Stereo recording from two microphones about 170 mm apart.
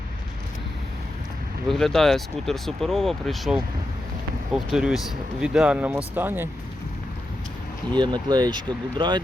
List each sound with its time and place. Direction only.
1.6 s speech: centre (ahead or behind)
4.7 s speech: 5° right (ahead or behind)
7.9 s speech: 25° right (ahead or behind)